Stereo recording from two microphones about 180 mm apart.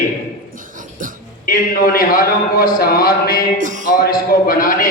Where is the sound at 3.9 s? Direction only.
55° left (ahead or behind).